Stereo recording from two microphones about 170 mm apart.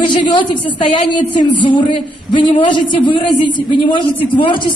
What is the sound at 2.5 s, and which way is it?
A woman's voice, 30° left (ahead or behind).